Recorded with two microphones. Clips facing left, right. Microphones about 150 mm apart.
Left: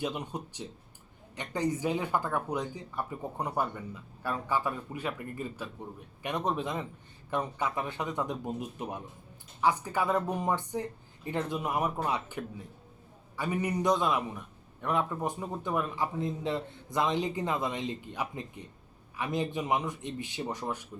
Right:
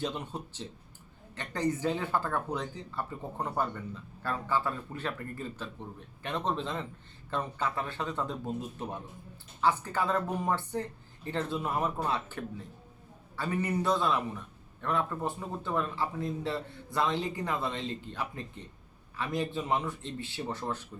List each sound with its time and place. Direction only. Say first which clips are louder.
0.0 s a man's voice: left 1 dB; 15° left (ahead or behind)